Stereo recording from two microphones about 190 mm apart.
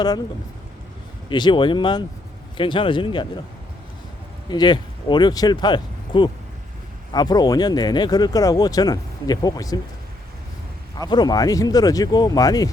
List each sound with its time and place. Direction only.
1.3 s speech: 25° left (ahead or behind)
4.4 s speech: 25° left (ahead or behind)
11.0 s speech: 20° left (ahead or behind)